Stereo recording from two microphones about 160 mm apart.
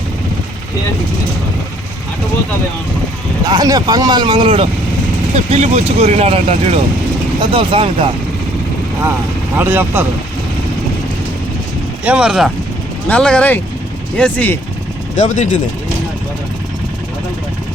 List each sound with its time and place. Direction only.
3.4 s speech: 25° right (ahead or behind)
5.5 s speech: 45° right (ahead or behind)
9.6 s speech: 15° right (ahead or behind)
12.0 s speech: 5° right (ahead or behind)
13.1 s speech: 5° left (ahead or behind)
15.1 s speech: 50° left (ahead or behind)